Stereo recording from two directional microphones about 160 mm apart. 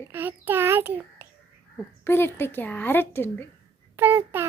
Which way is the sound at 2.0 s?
15° left (ahead or behind).